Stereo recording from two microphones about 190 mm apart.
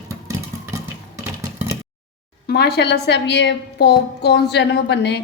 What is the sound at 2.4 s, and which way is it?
A woman's voice, 60° left (ahead or behind).